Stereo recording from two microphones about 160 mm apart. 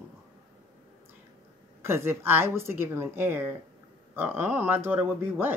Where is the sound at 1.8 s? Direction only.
15° right (ahead or behind).